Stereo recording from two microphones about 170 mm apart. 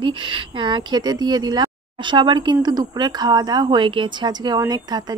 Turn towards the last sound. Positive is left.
turn(degrees=-25)  # may be behind; listen again after turning